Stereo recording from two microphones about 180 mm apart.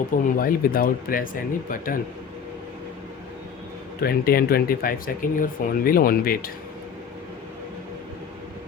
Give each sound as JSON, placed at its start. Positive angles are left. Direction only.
{"t": 0.3, "sound": "speech", "side_deg": 55}
{"t": 4.0, "sound": "speech", "side_deg": 55}